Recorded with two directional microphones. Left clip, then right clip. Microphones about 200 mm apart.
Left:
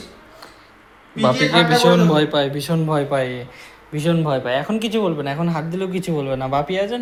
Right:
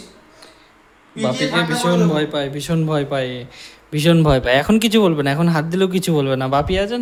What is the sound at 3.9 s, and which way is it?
Speech, 40° right (ahead or behind).